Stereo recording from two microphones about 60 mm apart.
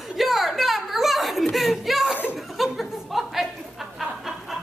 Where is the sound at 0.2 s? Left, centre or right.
Centre.